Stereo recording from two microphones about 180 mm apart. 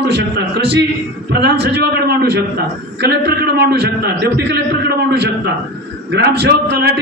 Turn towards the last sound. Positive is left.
turn(degrees=-65)  # may be behind; listen again after turning